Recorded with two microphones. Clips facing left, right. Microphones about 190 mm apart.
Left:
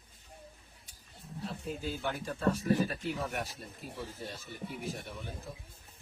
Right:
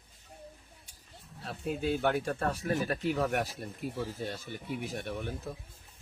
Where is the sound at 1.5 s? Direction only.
65° right (ahead or behind).